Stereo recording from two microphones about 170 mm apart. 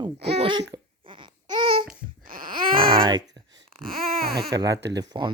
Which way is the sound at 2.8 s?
30° right (ahead or behind).